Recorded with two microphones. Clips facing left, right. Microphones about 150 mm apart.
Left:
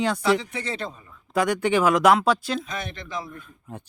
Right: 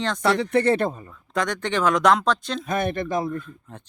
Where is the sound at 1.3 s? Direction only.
10° left (ahead or behind).